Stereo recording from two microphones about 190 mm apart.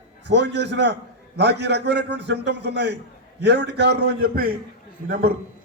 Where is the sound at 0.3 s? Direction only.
65° right (ahead or behind).